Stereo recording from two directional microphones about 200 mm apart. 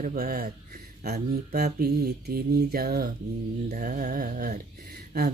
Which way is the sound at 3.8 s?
40° right (ahead or behind).